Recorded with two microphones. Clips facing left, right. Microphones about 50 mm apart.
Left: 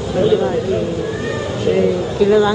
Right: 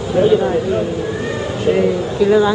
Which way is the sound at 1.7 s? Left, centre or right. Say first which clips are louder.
Even; centre.